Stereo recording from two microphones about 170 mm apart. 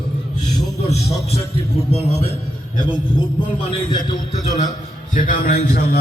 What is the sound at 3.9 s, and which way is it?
Speech, 25° left (ahead or behind).